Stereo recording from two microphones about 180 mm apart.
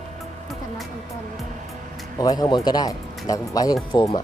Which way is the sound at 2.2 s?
20° left (ahead or behind).